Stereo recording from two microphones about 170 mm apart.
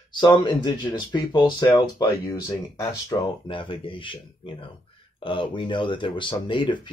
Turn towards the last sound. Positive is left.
turn(degrees=30)  # may be behind; listen again after turning